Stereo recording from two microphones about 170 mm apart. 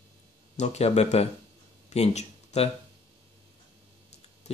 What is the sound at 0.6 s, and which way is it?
Speech, 40° left (ahead or behind).